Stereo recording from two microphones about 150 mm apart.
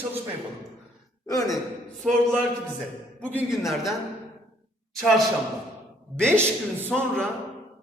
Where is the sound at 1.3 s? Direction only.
25° left (ahead or behind).